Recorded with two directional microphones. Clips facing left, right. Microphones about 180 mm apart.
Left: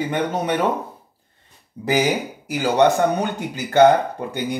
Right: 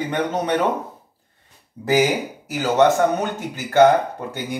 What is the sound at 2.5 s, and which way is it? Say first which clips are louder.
Speech: even; 15° left (ahead or behind).